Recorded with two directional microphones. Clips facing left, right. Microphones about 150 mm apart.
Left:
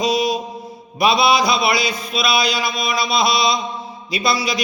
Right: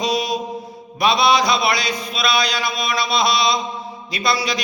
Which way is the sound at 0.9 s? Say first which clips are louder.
Left 1 dB; 5° left (ahead or behind).